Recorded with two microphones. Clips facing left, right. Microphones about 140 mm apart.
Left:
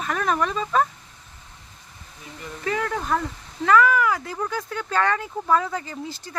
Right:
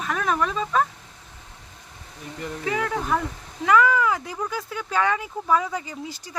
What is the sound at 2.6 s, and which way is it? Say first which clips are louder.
Speech: even; 5° right (ahead or behind).